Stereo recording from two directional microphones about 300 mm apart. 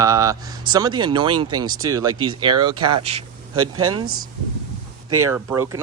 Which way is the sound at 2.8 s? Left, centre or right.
Right.